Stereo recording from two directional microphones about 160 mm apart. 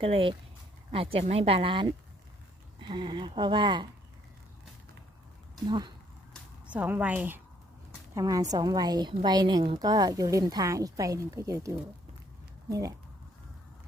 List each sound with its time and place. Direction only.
0.0 s a woman's voice: 35° right (ahead or behind)
5.6 s speech: 25° right (ahead or behind)
6.7 s a woman's voice: 10° right (ahead or behind)
8.1 s speech: 20° right (ahead or behind)